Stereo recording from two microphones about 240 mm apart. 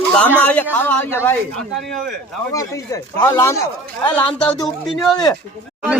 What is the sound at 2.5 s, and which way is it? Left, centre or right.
A man's voice, centre.